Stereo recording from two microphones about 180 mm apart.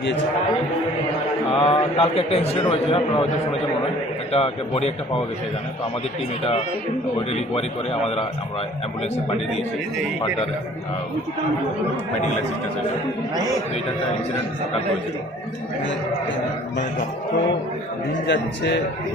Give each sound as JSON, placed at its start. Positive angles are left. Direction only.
{"t": 1.5, "sound": "a man's voice", "side_deg": 30}
{"t": 4.3, "sound": "a man's voice", "side_deg": 35}
{"t": 6.4, "sound": "a man's voice", "side_deg": 35}
{"t": 8.0, "sound": "a man's voice", "side_deg": 35}
{"t": 18.3, "sound": "a man's voice", "side_deg": 75}